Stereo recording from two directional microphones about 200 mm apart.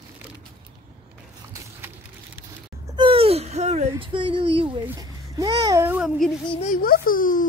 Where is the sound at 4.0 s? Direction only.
25° right (ahead or behind).